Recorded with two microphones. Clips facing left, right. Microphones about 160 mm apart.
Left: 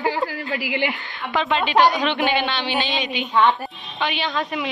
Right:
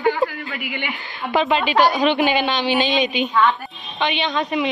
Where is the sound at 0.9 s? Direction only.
20° right (ahead or behind).